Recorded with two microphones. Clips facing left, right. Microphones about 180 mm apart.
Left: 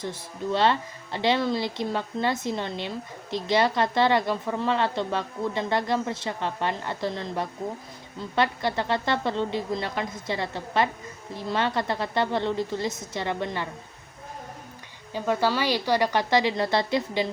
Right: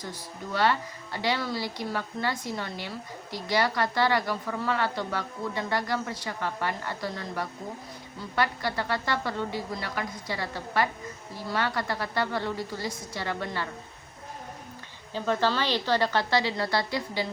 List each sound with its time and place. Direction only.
0.0 s speech: 25° left (ahead or behind)
15.1 s speech: 10° left (ahead or behind)